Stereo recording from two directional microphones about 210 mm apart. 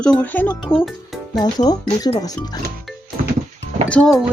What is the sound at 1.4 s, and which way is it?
Speech, 20° left (ahead or behind).